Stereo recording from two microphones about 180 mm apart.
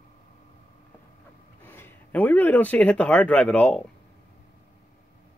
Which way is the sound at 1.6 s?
10° left (ahead or behind).